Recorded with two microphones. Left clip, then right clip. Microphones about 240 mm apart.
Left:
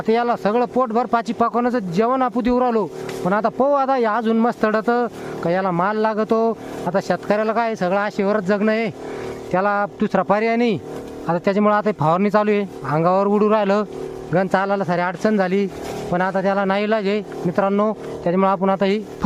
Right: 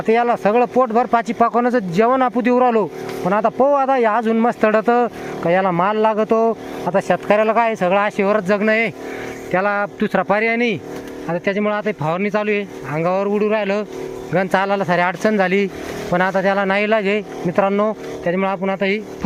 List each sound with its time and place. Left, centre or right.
0.0 s speech: centre